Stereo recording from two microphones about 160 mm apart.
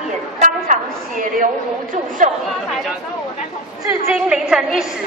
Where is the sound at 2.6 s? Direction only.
Centre (ahead or behind).